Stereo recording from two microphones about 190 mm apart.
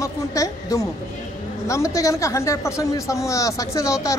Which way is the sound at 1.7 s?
15° left (ahead or behind).